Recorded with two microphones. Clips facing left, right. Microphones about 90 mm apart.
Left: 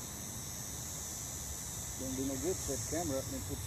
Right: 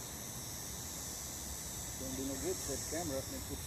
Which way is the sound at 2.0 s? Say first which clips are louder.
Left 4 dB; 30° left (ahead or behind).